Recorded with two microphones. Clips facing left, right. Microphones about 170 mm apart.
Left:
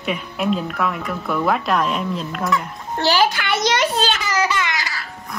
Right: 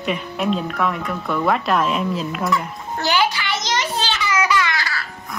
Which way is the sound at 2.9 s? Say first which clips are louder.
Left 2 dB; 35° left (ahead or behind).